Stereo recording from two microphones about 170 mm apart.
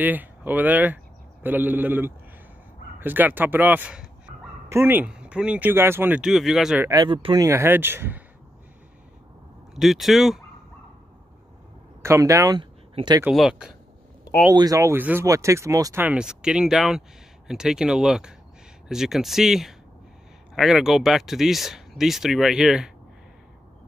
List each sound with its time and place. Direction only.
0.0 s speech: 10° right (ahead or behind)
4.3 s dog: 45° right (ahead or behind)
4.6 s speech: 15° right (ahead or behind)
6.9 s speech: 25° right (ahead or behind)
7.4 s speech: 15° right (ahead or behind)
9.8 s speech: centre (ahead or behind)
12.0 s speech: 15° right (ahead or behind)
13.2 s speech: 5° right (ahead or behind)
14.5 s speech: 20° right (ahead or behind); by 22.8 s 5° right (ahead or behind)